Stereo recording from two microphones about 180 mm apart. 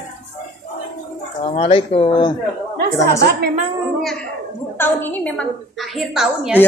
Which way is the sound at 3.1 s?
65° right (ahead or behind).